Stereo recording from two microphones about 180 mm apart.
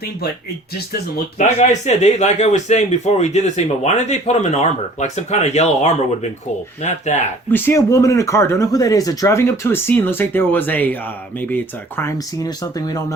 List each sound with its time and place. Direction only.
1.5 s speech: 40° left (ahead or behind)
7.5 s speech: 10° left (ahead or behind)